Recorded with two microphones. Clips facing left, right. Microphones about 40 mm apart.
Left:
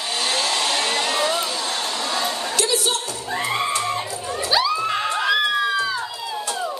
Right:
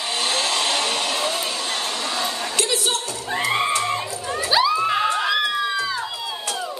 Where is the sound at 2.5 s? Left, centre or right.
Right.